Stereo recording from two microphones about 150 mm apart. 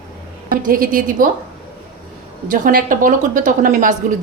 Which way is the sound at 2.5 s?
65° right (ahead or behind).